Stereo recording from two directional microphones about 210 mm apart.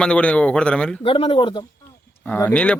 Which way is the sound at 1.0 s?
25° left (ahead or behind).